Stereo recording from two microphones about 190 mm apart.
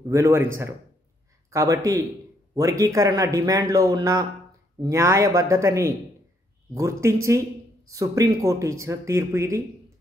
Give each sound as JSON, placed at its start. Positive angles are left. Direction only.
{"t": 0.1, "sound": "speech", "side_deg": -15}
{"t": 1.5, "sound": "speech", "side_deg": -15}